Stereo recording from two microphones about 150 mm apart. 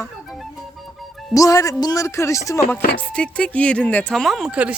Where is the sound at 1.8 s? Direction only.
20° left (ahead or behind).